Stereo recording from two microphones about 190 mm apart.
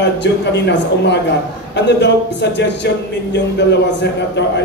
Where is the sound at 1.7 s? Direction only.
65° left (ahead or behind).